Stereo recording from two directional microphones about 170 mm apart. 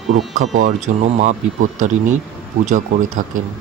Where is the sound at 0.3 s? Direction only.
45° right (ahead or behind).